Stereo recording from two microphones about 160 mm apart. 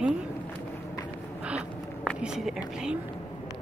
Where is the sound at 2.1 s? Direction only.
5° right (ahead or behind).